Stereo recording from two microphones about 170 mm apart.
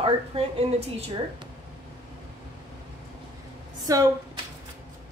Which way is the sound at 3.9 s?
20° right (ahead or behind).